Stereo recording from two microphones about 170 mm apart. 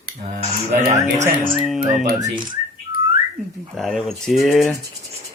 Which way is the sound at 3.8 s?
Centre (ahead or behind).